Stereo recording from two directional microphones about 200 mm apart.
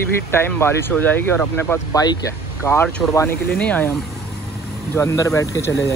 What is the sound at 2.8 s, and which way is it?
Speech, centre (ahead or behind).